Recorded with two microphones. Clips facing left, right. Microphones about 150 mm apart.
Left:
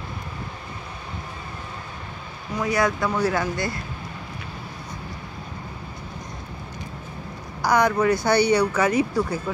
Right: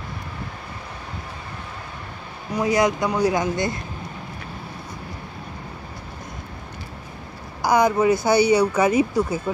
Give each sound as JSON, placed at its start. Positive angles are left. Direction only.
{"t": 2.5, "sound": "speech", "side_deg": -20}
{"t": 7.6, "sound": "speech", "side_deg": -10}